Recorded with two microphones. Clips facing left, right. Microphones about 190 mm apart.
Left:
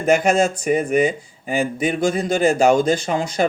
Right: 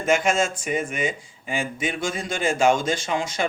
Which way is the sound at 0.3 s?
40° left (ahead or behind).